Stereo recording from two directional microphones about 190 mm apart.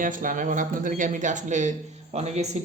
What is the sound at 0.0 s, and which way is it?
Speech, 45° right (ahead or behind).